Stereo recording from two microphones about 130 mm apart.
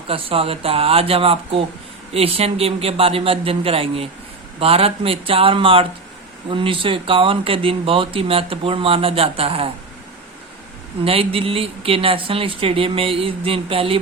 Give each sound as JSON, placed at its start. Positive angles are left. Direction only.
{"t": 0.1, "sound": "speech", "side_deg": -45}
{"t": 11.0, "sound": "speech", "side_deg": -45}